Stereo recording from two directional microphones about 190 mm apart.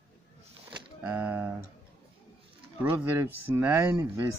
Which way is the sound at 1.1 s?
10° right (ahead or behind).